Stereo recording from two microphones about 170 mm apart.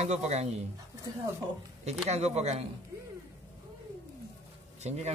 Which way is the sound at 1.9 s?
40° right (ahead or behind).